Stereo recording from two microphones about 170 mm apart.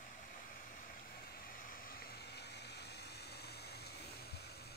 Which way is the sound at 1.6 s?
55° left (ahead or behind).